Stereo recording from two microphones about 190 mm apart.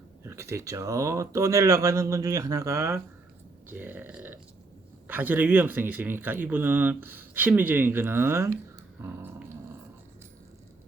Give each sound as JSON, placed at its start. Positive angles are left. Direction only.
{"t": 0.3, "sound": "speech", "side_deg": -15}